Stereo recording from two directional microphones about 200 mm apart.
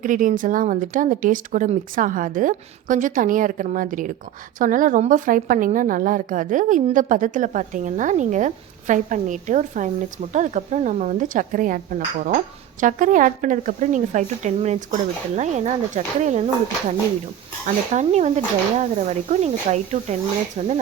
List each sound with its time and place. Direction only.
0.0 s a woman's voice: 40° right (ahead or behind)
17.9 s a woman's voice: 35° right (ahead or behind)